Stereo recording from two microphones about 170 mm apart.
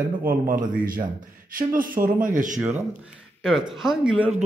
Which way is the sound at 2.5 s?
10° right (ahead or behind).